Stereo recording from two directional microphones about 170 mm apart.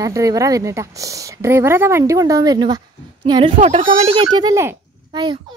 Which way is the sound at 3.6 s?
40° right (ahead or behind).